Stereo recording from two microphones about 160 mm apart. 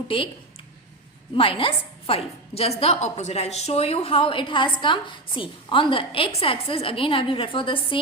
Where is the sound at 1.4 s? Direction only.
35° left (ahead or behind).